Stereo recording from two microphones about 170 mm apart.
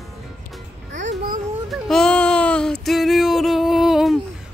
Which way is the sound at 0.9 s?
50° right (ahead or behind).